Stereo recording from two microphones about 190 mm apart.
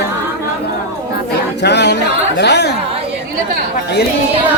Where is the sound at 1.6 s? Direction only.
65° left (ahead or behind).